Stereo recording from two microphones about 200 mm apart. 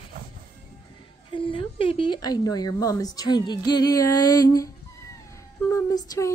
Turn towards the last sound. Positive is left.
turn(degrees=20)  # may be behind; listen again after turning